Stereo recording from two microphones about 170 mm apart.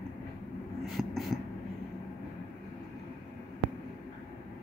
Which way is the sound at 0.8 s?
Centre (ahead or behind).